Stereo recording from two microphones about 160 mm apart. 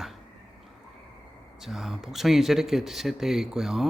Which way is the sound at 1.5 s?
Centre (ahead or behind).